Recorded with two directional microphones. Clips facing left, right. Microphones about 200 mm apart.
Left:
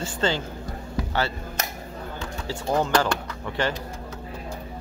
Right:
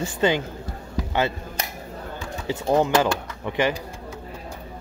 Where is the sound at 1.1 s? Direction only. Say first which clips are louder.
Right 4 dB; 15° right (ahead or behind).